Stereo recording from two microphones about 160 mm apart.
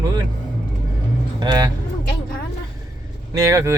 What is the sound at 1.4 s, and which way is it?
Speech, 25° right (ahead or behind).